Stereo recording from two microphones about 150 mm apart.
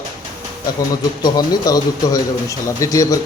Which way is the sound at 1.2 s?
25° left (ahead or behind).